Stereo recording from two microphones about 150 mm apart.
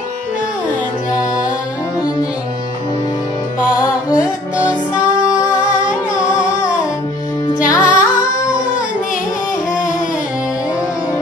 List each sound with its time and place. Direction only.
5.9 s music: 10° right (ahead or behind)